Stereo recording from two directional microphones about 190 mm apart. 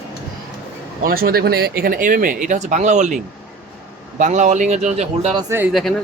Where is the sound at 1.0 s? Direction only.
50° right (ahead or behind).